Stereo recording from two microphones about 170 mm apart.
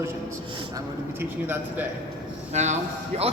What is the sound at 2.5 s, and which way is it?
Speech, 45° right (ahead or behind).